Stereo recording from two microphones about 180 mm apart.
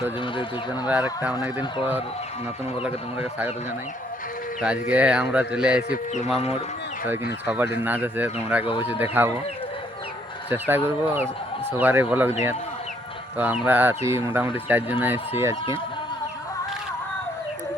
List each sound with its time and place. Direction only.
0.7 s speech: 10° right (ahead or behind)
4.6 s speech: 5° right (ahead or behind)
5.9 s speech: 40° left (ahead or behind)
7.4 s speech: 10° right (ahead or behind)
10.5 s speech: 10° right (ahead or behind)
13.3 s speech: 10° right (ahead or behind)